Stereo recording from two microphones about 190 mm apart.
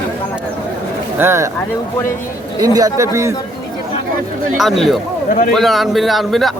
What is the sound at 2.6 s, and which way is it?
Speech, 20° right (ahead or behind).